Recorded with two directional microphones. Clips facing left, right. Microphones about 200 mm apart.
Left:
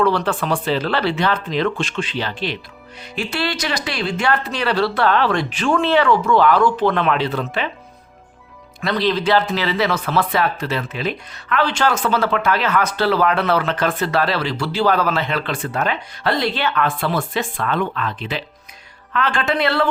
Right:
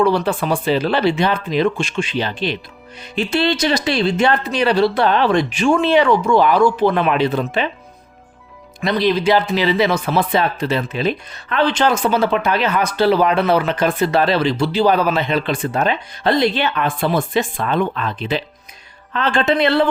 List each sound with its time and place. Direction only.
0.0 s speech: 10° right (ahead or behind)
8.8 s speech: 15° right (ahead or behind)